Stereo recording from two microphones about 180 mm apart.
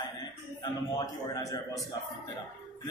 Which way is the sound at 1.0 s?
20° left (ahead or behind).